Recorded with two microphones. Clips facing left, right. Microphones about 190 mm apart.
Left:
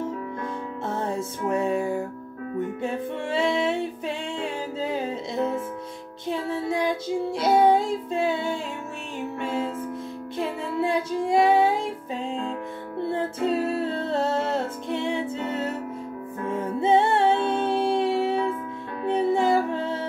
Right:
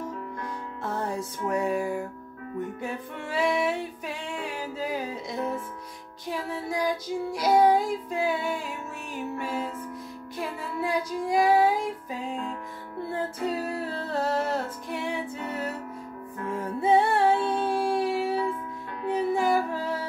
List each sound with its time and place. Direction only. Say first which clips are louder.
0.8 s music: left 2 dB; 25° left (ahead or behind)